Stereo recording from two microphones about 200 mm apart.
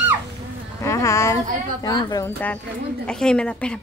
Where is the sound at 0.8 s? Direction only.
15° left (ahead or behind).